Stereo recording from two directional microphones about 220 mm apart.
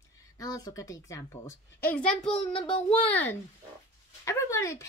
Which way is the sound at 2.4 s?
25° left (ahead or behind).